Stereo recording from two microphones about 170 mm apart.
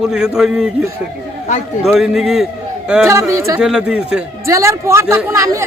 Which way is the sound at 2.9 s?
15° right (ahead or behind).